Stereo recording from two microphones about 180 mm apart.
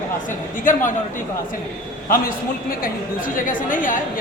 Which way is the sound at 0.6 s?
45° left (ahead or behind).